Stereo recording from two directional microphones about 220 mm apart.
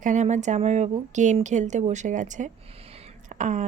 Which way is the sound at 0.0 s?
35° right (ahead or behind).